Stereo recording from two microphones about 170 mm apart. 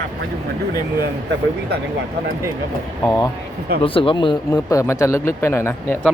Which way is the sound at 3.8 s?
30° left (ahead or behind).